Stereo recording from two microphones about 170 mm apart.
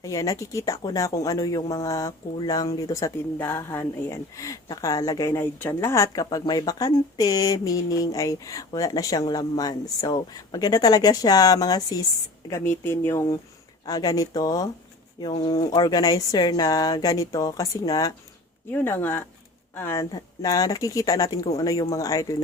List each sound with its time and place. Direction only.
0.0 s speech: 20° left (ahead or behind)